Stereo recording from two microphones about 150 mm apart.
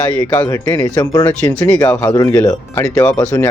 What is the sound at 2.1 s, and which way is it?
Speech, 20° left (ahead or behind).